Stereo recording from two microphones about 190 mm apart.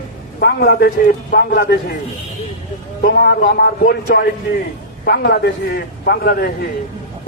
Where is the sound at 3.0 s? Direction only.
55° left (ahead or behind).